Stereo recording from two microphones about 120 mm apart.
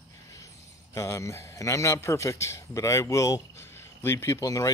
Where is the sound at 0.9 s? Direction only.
25° left (ahead or behind).